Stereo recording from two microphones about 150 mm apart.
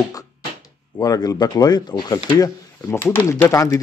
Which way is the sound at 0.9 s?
25° left (ahead or behind).